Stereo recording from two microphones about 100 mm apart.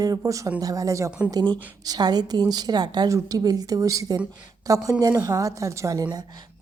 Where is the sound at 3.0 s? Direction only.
35° right (ahead or behind).